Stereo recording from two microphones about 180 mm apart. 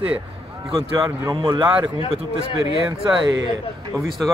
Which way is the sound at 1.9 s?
30° left (ahead or behind).